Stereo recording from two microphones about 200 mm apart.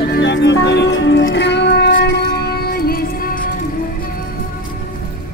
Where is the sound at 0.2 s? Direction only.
60° left (ahead or behind); by 3.5 s 45° left (ahead or behind).